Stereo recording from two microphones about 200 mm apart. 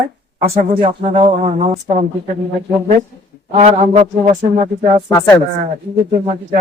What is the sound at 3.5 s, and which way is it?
Speech, 35° right (ahead or behind).